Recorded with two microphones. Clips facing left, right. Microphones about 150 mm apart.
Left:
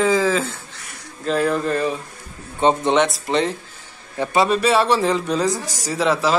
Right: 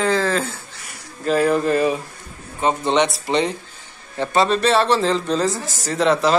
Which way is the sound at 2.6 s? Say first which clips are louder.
Left 3 dB; 30° left (ahead or behind).